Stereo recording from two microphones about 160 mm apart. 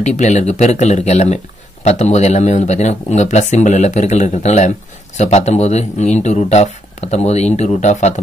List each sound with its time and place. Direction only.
0.0 s speech: 45° left (ahead or behind)